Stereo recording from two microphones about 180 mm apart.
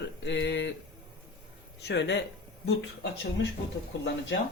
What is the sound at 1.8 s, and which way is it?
Speech, 75° left (ahead or behind).